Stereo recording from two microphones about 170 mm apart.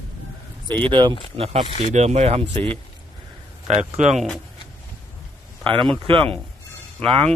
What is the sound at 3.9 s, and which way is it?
Speech, 40° right (ahead or behind).